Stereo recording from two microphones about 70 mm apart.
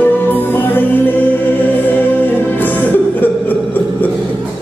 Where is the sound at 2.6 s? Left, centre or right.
Left.